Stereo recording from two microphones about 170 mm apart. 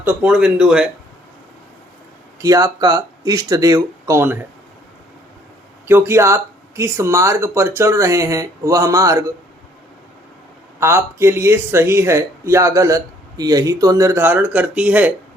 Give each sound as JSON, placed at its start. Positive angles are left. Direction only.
{"t": 0.0, "sound": "speech", "side_deg": -10}
{"t": 2.4, "sound": "speech", "side_deg": -20}
{"t": 5.9, "sound": "speech", "side_deg": -15}
{"t": 10.8, "sound": "speech", "side_deg": -15}